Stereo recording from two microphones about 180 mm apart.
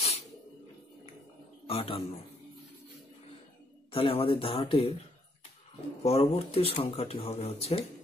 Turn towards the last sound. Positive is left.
turn(degrees=35)  # may be behind; listen again after turning